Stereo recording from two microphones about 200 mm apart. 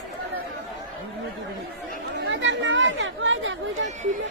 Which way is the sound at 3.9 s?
40° right (ahead or behind).